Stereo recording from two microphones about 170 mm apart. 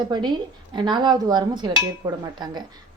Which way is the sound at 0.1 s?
25° right (ahead or behind).